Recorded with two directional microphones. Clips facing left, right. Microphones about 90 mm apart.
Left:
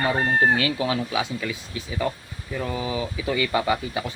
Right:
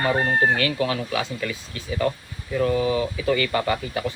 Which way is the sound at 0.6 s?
15° left (ahead or behind).